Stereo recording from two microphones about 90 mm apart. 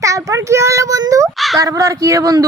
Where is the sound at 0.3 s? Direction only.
35° right (ahead or behind).